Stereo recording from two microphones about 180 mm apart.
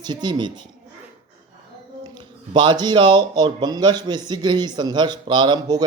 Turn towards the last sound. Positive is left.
turn(degrees=-20)  # may be behind; listen again after turning